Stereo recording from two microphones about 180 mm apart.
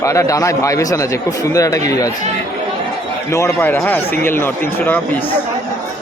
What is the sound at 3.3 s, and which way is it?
A man's voice, 15° left (ahead or behind).